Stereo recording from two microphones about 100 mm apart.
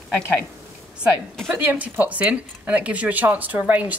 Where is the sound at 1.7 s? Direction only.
15° right (ahead or behind).